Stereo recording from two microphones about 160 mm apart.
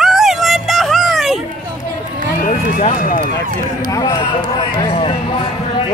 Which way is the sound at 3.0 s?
60° left (ahead or behind).